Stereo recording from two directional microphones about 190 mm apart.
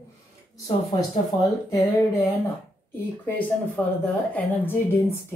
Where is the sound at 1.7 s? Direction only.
20° left (ahead or behind).